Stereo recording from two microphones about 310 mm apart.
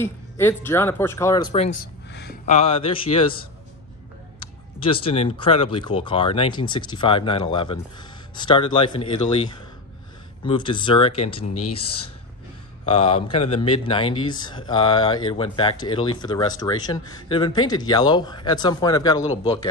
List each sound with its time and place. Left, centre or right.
0.0 s speech: centre
4.7 s speech: centre
10.4 s speech: centre
12.8 s speech: centre